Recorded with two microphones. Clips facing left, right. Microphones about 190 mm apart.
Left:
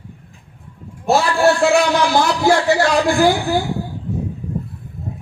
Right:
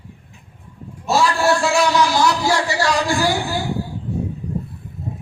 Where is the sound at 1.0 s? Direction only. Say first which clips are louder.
Left 3 dB; 60° left (ahead or behind).